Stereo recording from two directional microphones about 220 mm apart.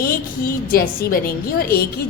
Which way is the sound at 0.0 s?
40° left (ahead or behind).